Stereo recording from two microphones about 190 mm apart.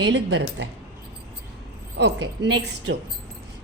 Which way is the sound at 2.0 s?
65° right (ahead or behind).